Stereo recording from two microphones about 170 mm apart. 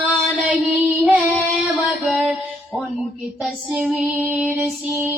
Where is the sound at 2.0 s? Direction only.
Centre (ahead or behind).